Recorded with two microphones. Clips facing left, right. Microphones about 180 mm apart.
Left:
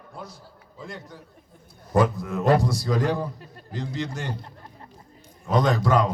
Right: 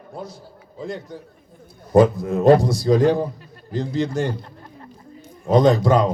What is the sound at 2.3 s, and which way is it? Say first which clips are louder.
A man's voice: right 7 dB; 25° right (ahead or behind).